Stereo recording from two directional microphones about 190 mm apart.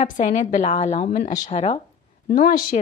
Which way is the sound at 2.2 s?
50° left (ahead or behind).